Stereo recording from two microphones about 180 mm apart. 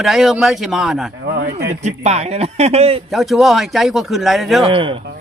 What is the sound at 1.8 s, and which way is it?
Speech, 40° right (ahead or behind).